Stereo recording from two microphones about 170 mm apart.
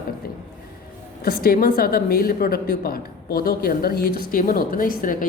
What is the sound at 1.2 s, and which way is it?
A woman's voice, 65° left (ahead or behind).